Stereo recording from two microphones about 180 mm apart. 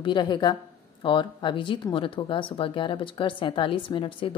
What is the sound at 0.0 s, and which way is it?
Speech, 25° left (ahead or behind).